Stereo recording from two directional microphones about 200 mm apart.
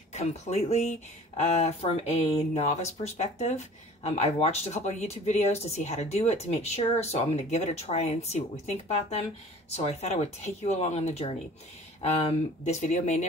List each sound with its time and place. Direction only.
0.1 s speech: 35° left (ahead or behind)